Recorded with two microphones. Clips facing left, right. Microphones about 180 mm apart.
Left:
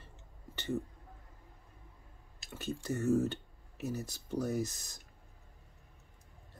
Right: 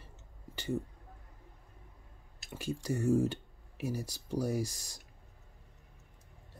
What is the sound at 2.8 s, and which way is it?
Speech, 10° right (ahead or behind).